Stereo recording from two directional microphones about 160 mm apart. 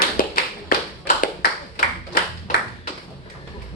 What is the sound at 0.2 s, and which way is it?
Clapping, 60° left (ahead or behind).